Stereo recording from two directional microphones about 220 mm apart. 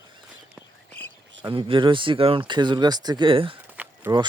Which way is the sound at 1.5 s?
25° right (ahead or behind).